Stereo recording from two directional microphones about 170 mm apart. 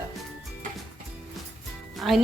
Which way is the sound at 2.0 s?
Centre (ahead or behind).